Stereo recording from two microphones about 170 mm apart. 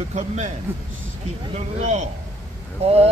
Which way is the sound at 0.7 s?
15° right (ahead or behind).